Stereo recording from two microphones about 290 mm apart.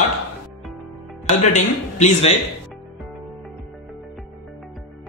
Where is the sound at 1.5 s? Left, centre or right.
Left.